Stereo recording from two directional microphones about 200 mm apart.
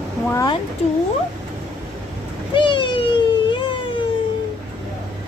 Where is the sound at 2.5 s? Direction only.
25° left (ahead or behind).